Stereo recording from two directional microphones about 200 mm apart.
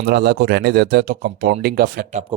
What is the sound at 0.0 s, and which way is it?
Speech, 50° right (ahead or behind).